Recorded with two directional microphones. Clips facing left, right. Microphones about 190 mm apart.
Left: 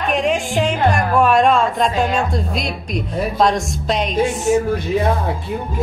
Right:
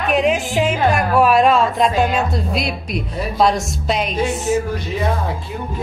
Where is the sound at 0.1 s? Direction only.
5° right (ahead or behind).